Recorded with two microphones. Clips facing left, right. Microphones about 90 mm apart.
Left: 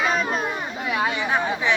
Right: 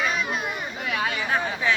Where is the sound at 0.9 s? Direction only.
20° left (ahead or behind).